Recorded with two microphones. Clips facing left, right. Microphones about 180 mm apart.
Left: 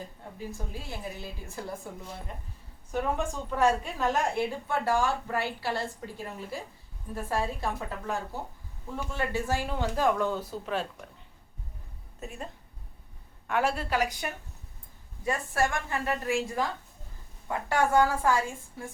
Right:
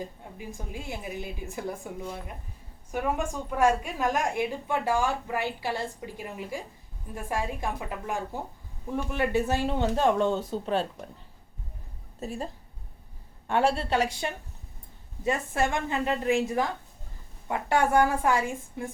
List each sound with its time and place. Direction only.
0.3 s a woman's voice: 15° right (ahead or behind)
3.6 s a woman's voice: 10° right (ahead or behind); by 11.0 s 30° right (ahead or behind)
12.2 s a woman's voice: 35° right (ahead or behind)
13.5 s speech: 30° right (ahead or behind)